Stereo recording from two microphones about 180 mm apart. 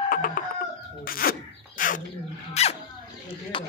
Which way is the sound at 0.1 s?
50° left (ahead or behind).